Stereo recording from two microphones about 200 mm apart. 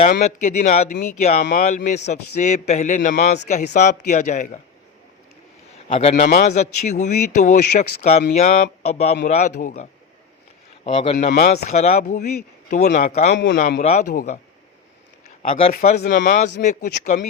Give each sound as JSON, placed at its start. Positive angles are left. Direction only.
{"t": 0.1, "sound": "a man's voice", "side_deg": 35}
{"t": 5.7, "sound": "a man's voice", "side_deg": 30}
{"t": 10.8, "sound": "a man's voice", "side_deg": 30}
{"t": 13.3, "sound": "a man's voice", "side_deg": 60}
{"t": 13.6, "sound": "a man's voice", "side_deg": 45}
{"t": 16.0, "sound": "a man's voice", "side_deg": 45}